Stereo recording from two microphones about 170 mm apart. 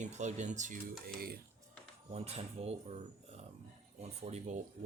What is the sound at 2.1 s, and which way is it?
Speech, 35° right (ahead or behind).